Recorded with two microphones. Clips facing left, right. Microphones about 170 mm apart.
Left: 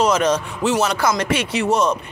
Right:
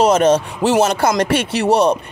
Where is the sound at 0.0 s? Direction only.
55° right (ahead or behind).